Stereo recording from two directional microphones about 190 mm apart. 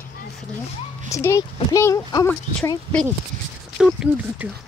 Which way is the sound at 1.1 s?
15° left (ahead or behind).